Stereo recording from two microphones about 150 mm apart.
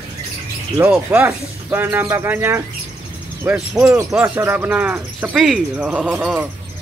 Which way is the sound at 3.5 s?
5° right (ahead or behind).